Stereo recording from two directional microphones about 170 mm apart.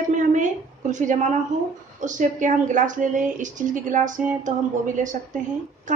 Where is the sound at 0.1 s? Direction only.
50° right (ahead or behind).